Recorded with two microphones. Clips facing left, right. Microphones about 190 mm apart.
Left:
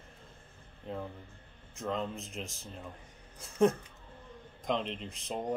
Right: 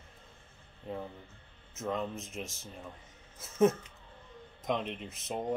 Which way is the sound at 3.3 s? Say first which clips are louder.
Right 1 dB; 5° right (ahead or behind).